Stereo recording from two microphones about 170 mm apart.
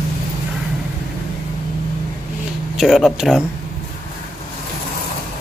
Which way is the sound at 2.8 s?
Centre (ahead or behind).